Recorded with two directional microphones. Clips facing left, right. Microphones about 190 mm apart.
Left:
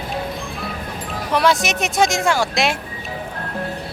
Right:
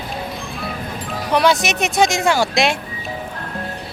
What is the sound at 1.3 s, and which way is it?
Speech, centre (ahead or behind).